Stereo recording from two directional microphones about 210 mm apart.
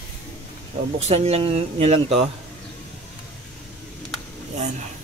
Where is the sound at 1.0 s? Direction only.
30° right (ahead or behind).